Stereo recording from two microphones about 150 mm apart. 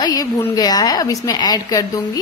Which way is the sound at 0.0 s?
25° left (ahead or behind).